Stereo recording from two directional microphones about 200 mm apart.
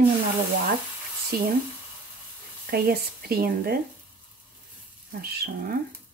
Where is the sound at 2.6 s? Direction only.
50° right (ahead or behind).